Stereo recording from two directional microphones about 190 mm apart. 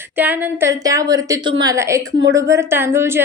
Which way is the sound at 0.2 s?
10° right (ahead or behind).